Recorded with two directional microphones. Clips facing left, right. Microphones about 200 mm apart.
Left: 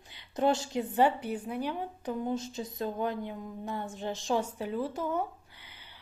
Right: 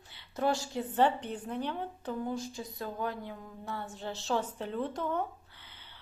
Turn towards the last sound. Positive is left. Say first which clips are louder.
# left 1 dB
turn(degrees=10)  # may be behind; listen again after turning